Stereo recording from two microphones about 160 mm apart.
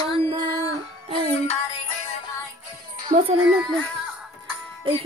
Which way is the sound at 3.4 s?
Centre (ahead or behind).